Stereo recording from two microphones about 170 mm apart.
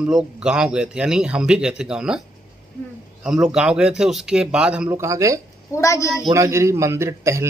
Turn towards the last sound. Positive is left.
turn(degrees=-15)  # may be behind; listen again after turning